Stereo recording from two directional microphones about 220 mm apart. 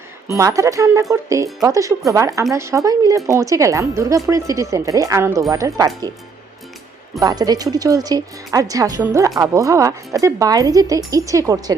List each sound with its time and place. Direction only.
0.3 s speech: 15° right (ahead or behind)
7.2 s speech: 15° right (ahead or behind)